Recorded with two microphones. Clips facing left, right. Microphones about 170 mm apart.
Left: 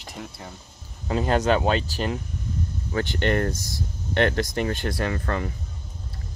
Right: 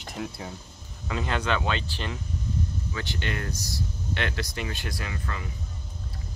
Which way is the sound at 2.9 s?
55° left (ahead or behind).